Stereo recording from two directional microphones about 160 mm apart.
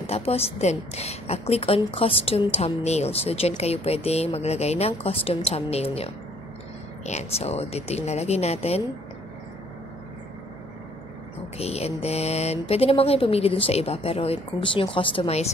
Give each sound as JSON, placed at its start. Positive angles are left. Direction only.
{"t": 0.0, "sound": "a woman's voice", "side_deg": 40}
{"t": 7.1, "sound": "a woman's voice", "side_deg": 45}
{"t": 11.5, "sound": "a woman's voice", "side_deg": 40}